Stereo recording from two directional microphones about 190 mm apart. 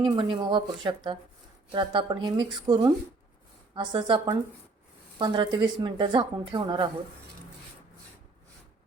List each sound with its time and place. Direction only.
0.2 s a woman's voice: 25° right (ahead or behind)